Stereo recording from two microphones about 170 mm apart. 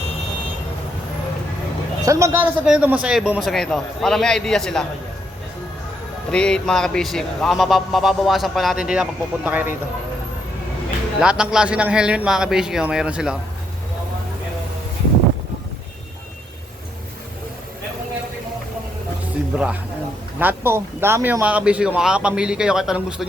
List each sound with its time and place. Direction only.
2.0 s a man's voice: 20° right (ahead or behind); by 4.9 s 5° left (ahead or behind)
6.3 s a man's voice: 5° left (ahead or behind); by 9.7 s 10° right (ahead or behind)
11.2 s a man's voice: 5° right (ahead or behind)
19.5 s speech: 5° right (ahead or behind)